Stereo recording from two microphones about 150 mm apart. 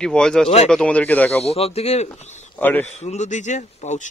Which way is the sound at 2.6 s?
15° left (ahead or behind).